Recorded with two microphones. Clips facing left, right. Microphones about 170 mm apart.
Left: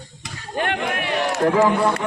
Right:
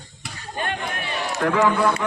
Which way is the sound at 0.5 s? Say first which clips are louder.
Left 5 dB; 75° left (ahead or behind).